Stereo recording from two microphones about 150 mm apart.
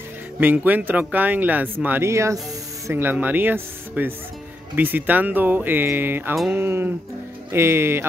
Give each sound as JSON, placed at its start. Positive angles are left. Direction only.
{"t": 0.4, "sound": "speech", "side_deg": -10}